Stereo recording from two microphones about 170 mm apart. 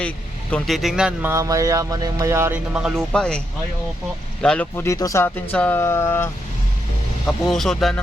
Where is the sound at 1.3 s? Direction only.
20° right (ahead or behind); by 6.2 s 15° left (ahead or behind).